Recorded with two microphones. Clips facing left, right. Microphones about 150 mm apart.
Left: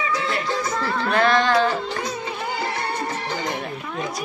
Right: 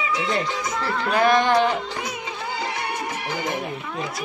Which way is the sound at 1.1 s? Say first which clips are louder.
Right 1 dB; 15° right (ahead or behind).